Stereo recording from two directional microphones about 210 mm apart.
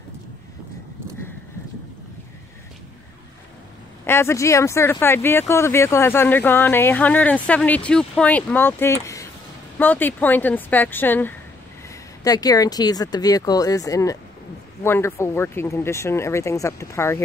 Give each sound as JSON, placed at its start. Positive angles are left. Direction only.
{"t": 4.0, "sound": "speech", "side_deg": 10}